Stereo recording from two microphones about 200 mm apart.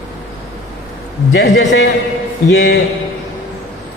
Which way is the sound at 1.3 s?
65° left (ahead or behind).